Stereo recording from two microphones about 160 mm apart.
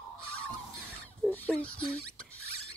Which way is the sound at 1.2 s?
5° left (ahead or behind).